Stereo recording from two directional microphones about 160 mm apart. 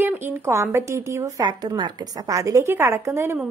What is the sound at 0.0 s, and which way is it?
A woman's voice, 15° right (ahead or behind).